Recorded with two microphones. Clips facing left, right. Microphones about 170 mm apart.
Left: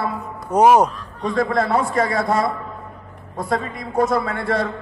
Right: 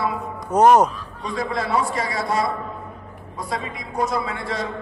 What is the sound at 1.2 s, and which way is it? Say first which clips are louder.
A man's voice: left 6 dB; 50° left (ahead or behind).